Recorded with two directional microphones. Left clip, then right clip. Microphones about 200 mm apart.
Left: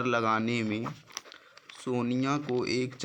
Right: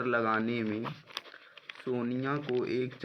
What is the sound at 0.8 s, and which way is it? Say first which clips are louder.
Speech: left 1 dB; 15° left (ahead or behind).